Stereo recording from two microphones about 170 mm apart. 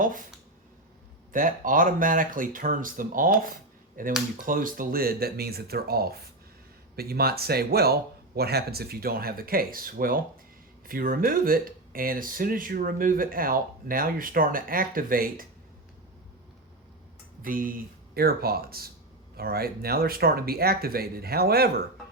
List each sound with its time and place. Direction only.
0.0 s a sound: 50° right (ahead or behind)
1.3 s speech: 50° right (ahead or behind)
17.4 s speech: 55° right (ahead or behind)